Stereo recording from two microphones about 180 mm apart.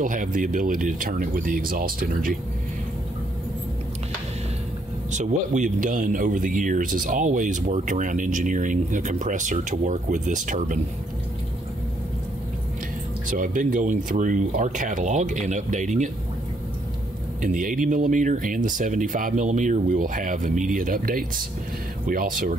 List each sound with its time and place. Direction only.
0.0 s speech: 45° right (ahead or behind)
5.1 s speech: 40° right (ahead or behind)
13.3 s speech: 45° right (ahead or behind)
17.4 s speech: 50° right (ahead or behind)